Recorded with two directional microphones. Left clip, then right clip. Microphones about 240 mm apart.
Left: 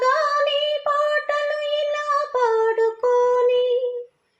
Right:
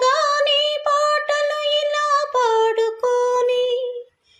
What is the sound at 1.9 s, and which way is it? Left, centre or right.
Music, right.